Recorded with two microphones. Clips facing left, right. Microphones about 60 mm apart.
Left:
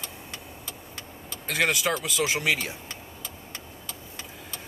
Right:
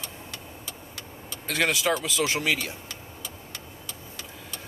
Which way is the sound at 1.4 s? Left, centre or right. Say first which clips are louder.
Even; centre.